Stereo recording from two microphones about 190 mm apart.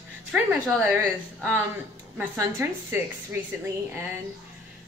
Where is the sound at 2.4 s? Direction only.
10° right (ahead or behind).